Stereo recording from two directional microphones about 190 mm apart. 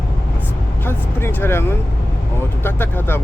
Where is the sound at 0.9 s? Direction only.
10° left (ahead or behind).